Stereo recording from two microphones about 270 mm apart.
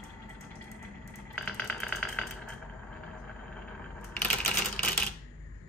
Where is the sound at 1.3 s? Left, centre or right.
Centre.